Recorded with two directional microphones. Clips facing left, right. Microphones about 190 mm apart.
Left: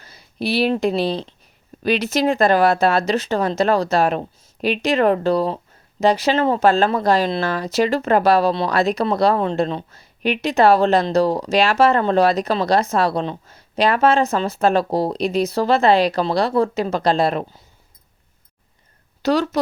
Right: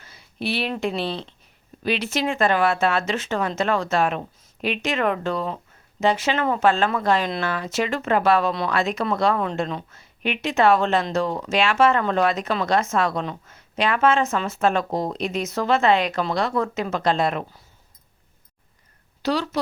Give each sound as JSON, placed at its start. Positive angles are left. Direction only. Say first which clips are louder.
{"t": 0.0, "sound": "speech", "louder": "left 4 dB", "side_deg": 35}
{"t": 19.2, "sound": "speech", "louder": "left 5 dB", "side_deg": 45}